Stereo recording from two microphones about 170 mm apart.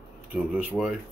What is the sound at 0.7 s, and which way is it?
Speech, 5° left (ahead or behind).